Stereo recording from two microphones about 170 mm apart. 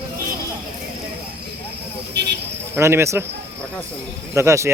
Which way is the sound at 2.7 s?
15° right (ahead or behind).